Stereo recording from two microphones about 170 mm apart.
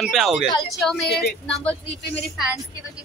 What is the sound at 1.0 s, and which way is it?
Speech, 70° left (ahead or behind).